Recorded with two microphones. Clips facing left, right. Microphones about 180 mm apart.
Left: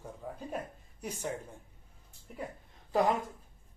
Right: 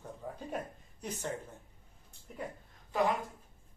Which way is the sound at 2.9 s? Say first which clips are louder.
Left 3 dB; 40° left (ahead or behind).